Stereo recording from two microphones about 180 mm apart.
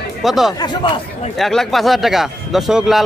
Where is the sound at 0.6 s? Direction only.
25° left (ahead or behind).